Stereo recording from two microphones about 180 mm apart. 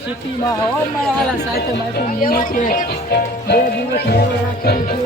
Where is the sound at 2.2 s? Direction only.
50° left (ahead or behind).